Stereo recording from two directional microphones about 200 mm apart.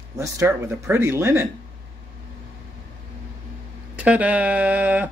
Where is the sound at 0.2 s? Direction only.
15° right (ahead or behind).